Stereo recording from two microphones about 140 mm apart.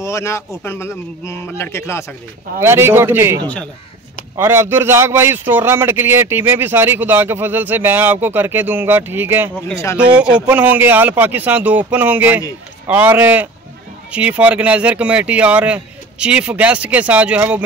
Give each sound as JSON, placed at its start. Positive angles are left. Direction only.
{"t": 0.0, "sound": "speech", "side_deg": 20}
{"t": 2.6, "sound": "speech", "side_deg": -15}
{"t": 4.4, "sound": "speech", "side_deg": -15}